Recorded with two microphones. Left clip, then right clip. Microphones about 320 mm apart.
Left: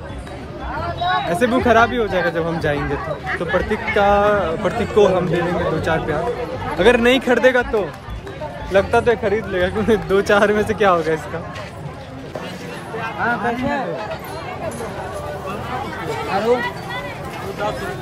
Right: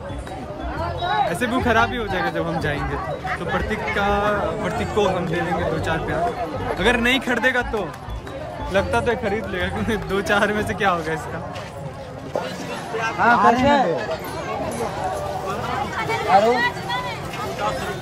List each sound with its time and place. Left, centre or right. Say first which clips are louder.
1.3 s speech: left 5 dB; centre
3.3 s speech: left 5 dB; centre
3.9 s speech: left 6 dB; centre
13.0 s speech: right 5 dB; right
16.5 s a sound: right 1 dB; right